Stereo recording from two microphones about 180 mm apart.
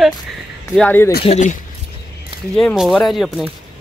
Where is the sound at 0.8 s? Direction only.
10° left (ahead or behind).